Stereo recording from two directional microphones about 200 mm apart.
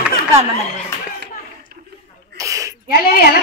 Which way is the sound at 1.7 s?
50° right (ahead or behind).